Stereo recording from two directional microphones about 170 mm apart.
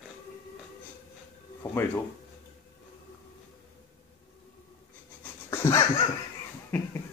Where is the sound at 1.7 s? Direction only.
15° left (ahead or behind).